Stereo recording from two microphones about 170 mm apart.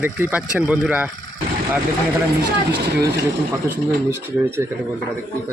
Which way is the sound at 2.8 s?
70° right (ahead or behind).